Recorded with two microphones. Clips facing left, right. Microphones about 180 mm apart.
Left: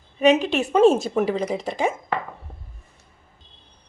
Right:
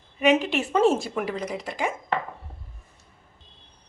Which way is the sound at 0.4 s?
15° left (ahead or behind).